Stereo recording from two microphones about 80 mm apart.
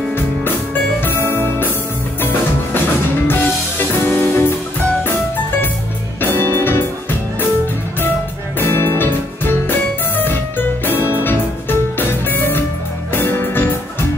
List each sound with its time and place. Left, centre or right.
1.0 s music: left
4.0 s music: left
6.2 s music: left
8.5 s music: left